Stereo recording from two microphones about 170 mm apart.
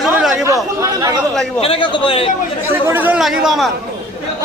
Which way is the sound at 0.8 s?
20° right (ahead or behind).